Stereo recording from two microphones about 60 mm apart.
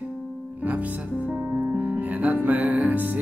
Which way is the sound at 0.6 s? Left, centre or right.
Right.